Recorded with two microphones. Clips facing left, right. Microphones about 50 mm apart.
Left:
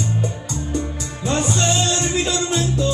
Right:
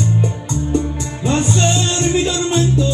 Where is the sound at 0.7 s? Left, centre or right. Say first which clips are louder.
Right 6 dB; right.